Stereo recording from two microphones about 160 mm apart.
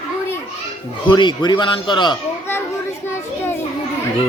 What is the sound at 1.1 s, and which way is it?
Speech, 30° left (ahead or behind).